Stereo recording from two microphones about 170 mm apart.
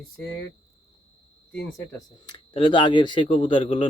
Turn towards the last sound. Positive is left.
turn(degrees=30)  # may be behind; listen again after turning